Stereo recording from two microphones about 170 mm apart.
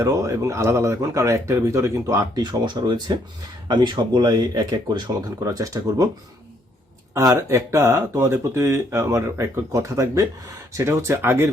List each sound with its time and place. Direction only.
0.0 s speech: 20° right (ahead or behind)
7.1 s speech: 20° right (ahead or behind)